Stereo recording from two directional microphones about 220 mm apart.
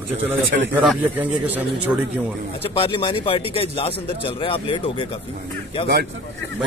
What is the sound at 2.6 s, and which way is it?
Speech, 25° left (ahead or behind).